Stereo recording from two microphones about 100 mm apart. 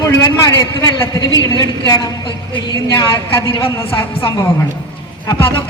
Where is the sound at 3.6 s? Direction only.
60° left (ahead or behind).